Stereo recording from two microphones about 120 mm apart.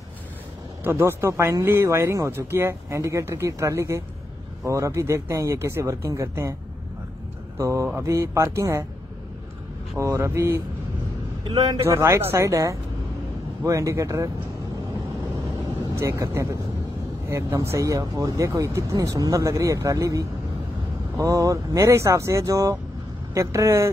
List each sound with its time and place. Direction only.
0.8 s speech: 20° right (ahead or behind)
7.5 s speech: 25° right (ahead or behind)
9.9 s speech: 25° right (ahead or behind)
11.8 s speech: 25° right (ahead or behind)
16.0 s speech: 25° right (ahead or behind)